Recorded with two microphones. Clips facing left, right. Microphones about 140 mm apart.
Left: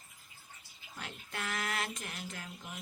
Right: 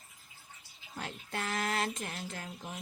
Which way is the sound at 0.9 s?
30° right (ahead or behind).